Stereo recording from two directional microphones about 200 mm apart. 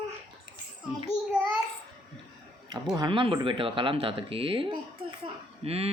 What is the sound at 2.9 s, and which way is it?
A woman's voice, 25° right (ahead or behind).